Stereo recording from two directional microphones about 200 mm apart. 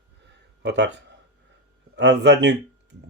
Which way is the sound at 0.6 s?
60° right (ahead or behind).